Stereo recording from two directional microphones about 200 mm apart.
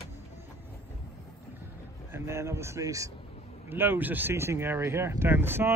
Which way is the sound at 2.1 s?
15° right (ahead or behind).